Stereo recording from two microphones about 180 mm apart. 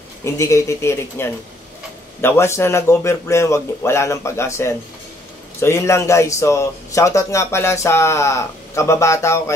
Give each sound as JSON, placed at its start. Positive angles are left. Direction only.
{"t": 0.2, "sound": "a man's voice", "side_deg": 15}